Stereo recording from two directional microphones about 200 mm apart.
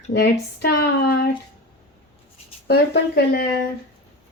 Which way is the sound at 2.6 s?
55° left (ahead or behind).